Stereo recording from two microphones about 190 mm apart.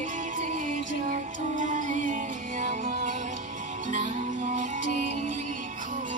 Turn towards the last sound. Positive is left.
turn(degrees=-40)  # may be behind; listen again after turning